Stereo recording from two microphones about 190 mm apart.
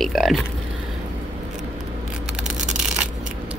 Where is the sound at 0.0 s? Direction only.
Centre (ahead or behind).